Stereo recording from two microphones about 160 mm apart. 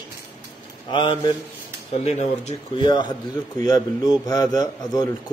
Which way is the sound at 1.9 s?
40° left (ahead or behind).